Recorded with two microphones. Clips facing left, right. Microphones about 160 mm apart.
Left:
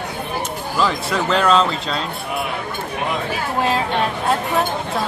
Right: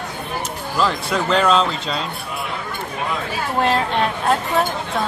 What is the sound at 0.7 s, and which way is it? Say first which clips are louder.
Speech: even; centre (ahead or behind).